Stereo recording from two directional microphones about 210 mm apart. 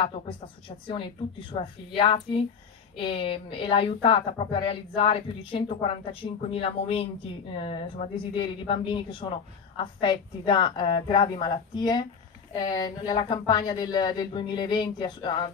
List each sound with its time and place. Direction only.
0.0 s speech: 25° left (ahead or behind)